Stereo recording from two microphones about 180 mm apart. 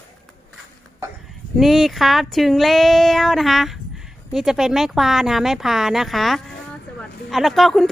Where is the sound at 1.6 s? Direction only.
Centre (ahead or behind).